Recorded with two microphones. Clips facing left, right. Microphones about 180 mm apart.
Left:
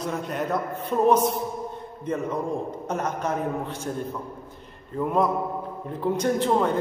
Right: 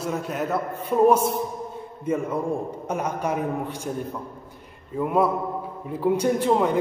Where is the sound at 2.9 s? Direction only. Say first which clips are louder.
Right 1 dB; 10° right (ahead or behind).